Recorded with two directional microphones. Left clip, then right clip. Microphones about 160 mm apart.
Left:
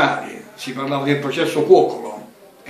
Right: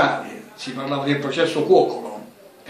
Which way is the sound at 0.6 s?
15° right (ahead or behind).